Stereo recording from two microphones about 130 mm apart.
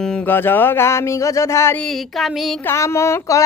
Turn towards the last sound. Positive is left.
turn(degrees=25)  # may be behind; listen again after turning